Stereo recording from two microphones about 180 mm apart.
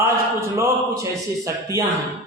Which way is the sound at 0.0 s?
15° right (ahead or behind).